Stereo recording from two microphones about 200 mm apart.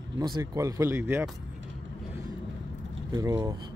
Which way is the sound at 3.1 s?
15° right (ahead or behind).